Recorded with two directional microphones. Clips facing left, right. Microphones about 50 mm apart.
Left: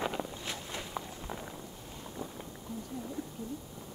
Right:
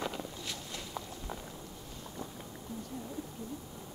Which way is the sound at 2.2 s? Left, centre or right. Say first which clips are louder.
Left 2 dB; centre.